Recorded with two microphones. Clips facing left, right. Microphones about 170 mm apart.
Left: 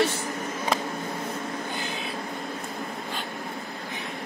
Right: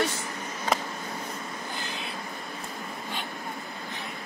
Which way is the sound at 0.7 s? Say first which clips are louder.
Even; centre (ahead or behind).